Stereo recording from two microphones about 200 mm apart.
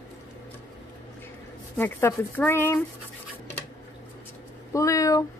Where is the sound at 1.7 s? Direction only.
10° left (ahead or behind).